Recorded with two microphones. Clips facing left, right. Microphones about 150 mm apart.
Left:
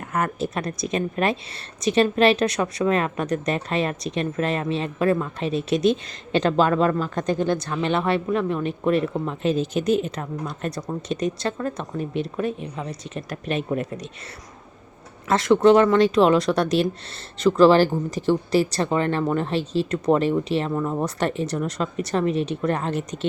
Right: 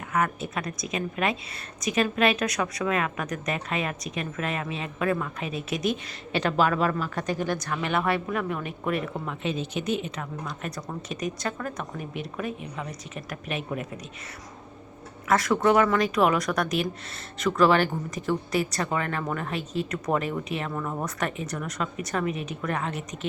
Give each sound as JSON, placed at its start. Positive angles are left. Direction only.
{"t": 0.2, "sound": "a woman's voice", "side_deg": 35}
{"t": 15.3, "sound": "a woman's voice", "side_deg": 25}
{"t": 20.7, "sound": "speech", "side_deg": 15}
{"t": 21.0, "sound": "a woman's voice", "side_deg": 30}